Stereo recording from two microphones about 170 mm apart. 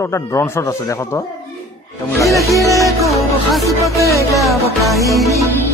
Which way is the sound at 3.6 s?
20° left (ahead or behind).